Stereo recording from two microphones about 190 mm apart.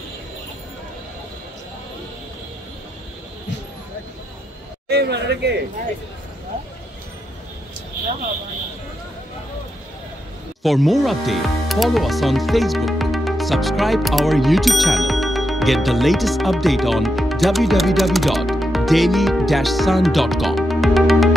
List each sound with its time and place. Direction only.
4.8 s speech: 60° right (ahead or behind)
10.6 s speech: centre (ahead or behind)